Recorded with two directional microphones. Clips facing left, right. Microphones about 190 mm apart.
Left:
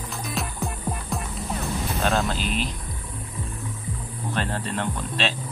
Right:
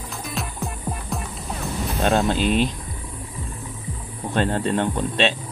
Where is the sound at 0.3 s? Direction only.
Centre (ahead or behind).